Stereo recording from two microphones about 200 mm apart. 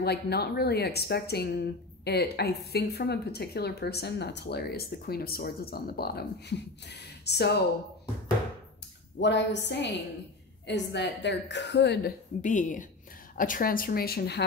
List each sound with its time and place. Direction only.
0.0 s speech: 55° left (ahead or behind)
9.2 s a woman's voice: 60° left (ahead or behind)
12.4 s a woman's voice: 40° left (ahead or behind)